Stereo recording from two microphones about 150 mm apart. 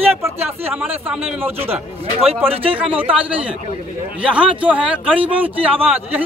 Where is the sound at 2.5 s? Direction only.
40° right (ahead or behind).